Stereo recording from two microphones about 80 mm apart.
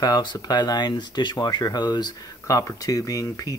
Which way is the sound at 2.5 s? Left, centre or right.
Left.